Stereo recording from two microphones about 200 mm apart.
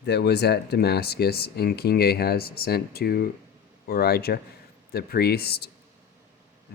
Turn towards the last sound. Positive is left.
turn(degrees=50)  # may be behind; listen again after turning